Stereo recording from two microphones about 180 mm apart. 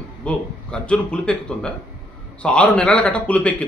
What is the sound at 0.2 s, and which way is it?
Speech, 5° left (ahead or behind).